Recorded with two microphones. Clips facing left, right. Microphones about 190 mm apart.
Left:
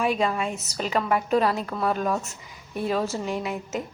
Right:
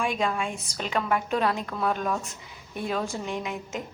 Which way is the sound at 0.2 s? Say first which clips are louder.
Left 2 dB; 5° left (ahead or behind).